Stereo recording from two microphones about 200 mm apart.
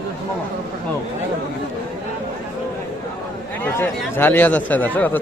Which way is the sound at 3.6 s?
10° left (ahead or behind).